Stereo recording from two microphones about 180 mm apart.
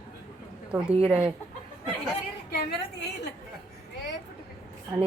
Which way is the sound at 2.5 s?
65° left (ahead or behind).